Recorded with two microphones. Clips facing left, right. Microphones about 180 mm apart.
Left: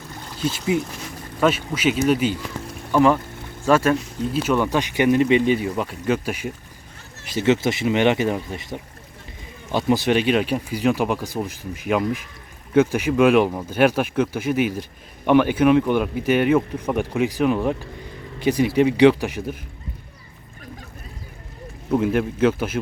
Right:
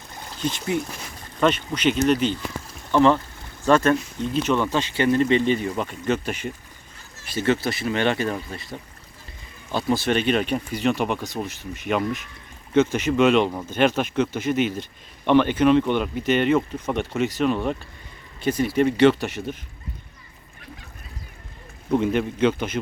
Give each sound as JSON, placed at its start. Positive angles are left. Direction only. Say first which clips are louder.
{"t": 0.4, "sound": "speech", "louder": "left 3 dB", "side_deg": 5}
{"t": 21.9, "sound": "speech", "louder": "left 1 dB", "side_deg": 5}